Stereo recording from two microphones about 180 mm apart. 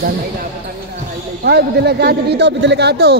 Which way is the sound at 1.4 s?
65° right (ahead or behind).